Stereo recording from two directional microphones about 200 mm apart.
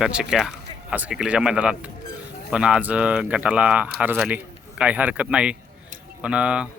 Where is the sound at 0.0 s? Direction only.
5° right (ahead or behind).